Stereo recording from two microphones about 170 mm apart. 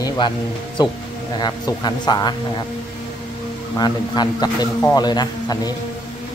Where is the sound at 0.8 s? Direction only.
25° left (ahead or behind).